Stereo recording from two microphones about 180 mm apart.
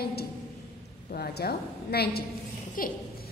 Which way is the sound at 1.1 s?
60° left (ahead or behind).